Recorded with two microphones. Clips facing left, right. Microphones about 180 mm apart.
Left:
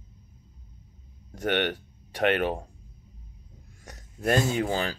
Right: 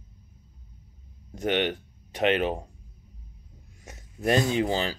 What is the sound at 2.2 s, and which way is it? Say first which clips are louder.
Speech: even; 20° right (ahead or behind).